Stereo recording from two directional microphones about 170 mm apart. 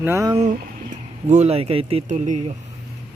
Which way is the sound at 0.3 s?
45° right (ahead or behind).